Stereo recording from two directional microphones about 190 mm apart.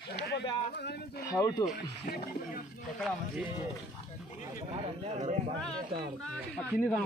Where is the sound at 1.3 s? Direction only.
20° left (ahead or behind).